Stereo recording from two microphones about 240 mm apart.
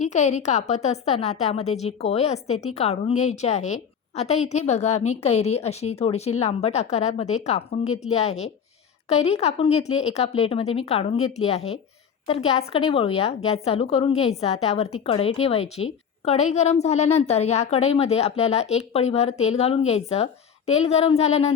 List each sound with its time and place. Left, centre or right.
0.0 s a woman's voice: left